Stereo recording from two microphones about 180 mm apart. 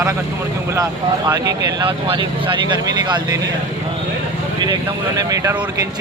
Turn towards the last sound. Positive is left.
turn(degrees=-20)  # may be behind; listen again after turning